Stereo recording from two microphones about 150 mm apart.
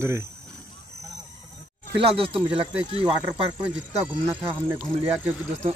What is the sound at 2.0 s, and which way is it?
Speech, 40° right (ahead or behind).